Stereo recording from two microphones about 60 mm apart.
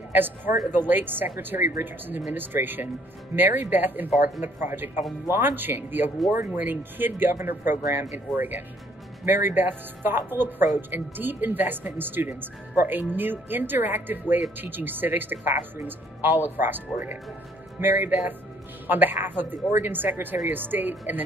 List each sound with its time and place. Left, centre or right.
0.1 s speech: right